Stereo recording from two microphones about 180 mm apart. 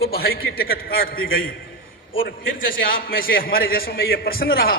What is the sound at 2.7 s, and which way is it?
A man's voice, 50° left (ahead or behind).